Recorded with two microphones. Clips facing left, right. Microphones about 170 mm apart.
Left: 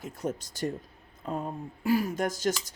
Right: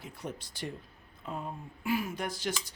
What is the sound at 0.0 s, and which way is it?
Speech, 45° left (ahead or behind).